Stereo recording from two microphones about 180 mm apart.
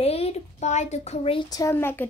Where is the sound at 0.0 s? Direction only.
35° left (ahead or behind).